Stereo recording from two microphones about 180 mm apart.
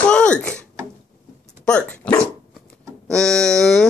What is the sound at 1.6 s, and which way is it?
Dog, 5° left (ahead or behind).